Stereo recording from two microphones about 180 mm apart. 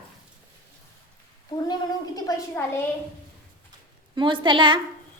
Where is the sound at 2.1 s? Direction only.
20° left (ahead or behind).